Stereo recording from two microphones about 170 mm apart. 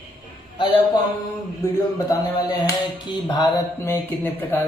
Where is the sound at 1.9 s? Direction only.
25° left (ahead or behind).